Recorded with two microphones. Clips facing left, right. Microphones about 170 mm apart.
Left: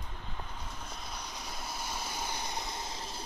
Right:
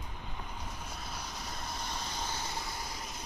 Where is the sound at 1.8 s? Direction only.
10° left (ahead or behind); by 3.2 s 30° left (ahead or behind).